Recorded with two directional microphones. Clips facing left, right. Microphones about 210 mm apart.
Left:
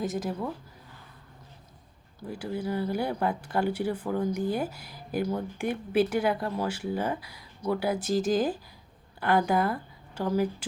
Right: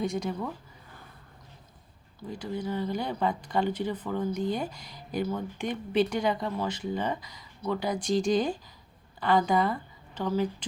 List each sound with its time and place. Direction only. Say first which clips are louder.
0.0 s speech: even; 5° left (ahead or behind)
2.3 s speech: left 1 dB; 10° left (ahead or behind)